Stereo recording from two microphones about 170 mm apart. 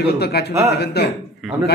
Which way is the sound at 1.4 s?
Centre (ahead or behind).